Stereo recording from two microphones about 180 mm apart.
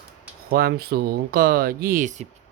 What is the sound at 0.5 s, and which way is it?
Speech, 60° right (ahead or behind).